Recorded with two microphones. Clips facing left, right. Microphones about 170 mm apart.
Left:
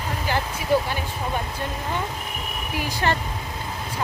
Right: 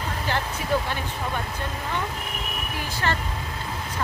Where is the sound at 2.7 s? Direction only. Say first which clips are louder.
Left 4 dB; 15° left (ahead or behind).